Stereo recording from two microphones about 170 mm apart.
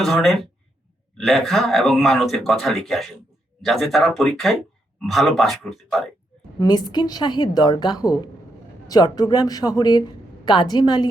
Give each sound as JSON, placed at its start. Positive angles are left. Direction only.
{"t": 0.0, "sound": "speech", "side_deg": 0}
{"t": 6.6, "sound": "a woman's voice", "side_deg": 25}